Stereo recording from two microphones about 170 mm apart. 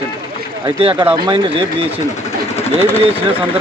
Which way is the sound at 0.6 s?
35° right (ahead or behind).